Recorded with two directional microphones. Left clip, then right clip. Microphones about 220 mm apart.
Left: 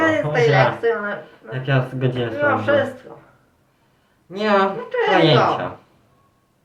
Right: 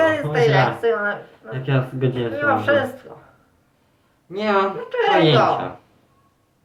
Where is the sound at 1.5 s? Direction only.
15° left (ahead or behind).